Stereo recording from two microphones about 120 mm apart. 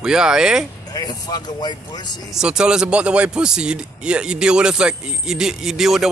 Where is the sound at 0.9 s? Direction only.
35° left (ahead or behind).